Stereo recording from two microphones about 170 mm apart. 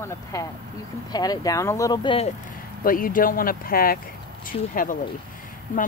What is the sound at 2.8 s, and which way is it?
A woman's voice, 55° left (ahead or behind).